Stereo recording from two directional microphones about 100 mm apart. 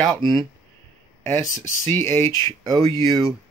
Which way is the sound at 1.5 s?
30° left (ahead or behind).